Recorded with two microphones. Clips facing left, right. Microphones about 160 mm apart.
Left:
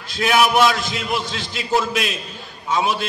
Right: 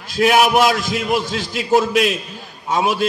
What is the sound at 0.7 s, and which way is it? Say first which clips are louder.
A man's voice: right 3 dB; 45° right (ahead or behind).